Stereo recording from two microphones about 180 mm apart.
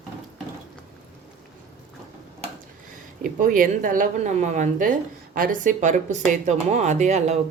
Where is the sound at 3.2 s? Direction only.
50° right (ahead or behind).